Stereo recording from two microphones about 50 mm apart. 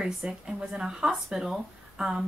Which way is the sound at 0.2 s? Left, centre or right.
Centre.